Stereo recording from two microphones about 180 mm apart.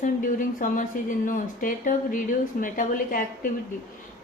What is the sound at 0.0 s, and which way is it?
Speech, 45° left (ahead or behind).